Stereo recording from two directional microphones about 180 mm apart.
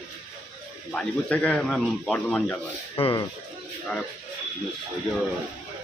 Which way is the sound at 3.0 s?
30° left (ahead or behind).